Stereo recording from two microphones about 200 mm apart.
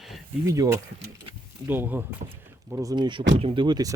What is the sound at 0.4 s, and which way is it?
Speech, 15° right (ahead or behind).